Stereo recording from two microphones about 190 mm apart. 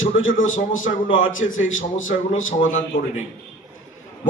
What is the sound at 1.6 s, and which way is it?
Speech, 90° left.